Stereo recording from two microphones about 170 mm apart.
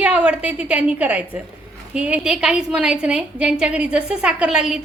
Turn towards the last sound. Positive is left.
turn(degrees=-5)  # may be behind; listen again after turning